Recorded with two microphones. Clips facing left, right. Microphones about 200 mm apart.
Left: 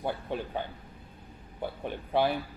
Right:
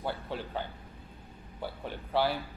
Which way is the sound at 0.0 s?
15° left (ahead or behind).